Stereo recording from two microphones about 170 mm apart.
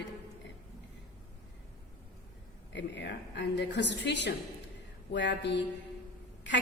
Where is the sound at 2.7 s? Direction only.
90° left.